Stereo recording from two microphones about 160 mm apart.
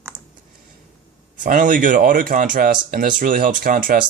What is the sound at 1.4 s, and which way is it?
Speech, 55° right (ahead or behind).